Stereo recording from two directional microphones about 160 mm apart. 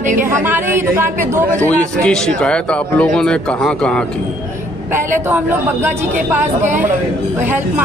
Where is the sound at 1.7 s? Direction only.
5° left (ahead or behind).